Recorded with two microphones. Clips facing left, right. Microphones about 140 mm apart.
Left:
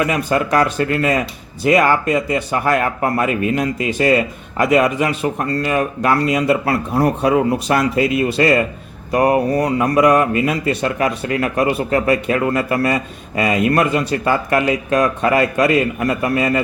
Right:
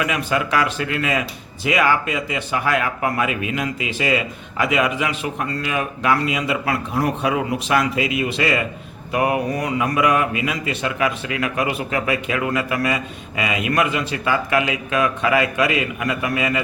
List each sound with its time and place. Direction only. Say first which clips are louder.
0.0 s a man's voice: left 4 dB; 40° left (ahead or behind)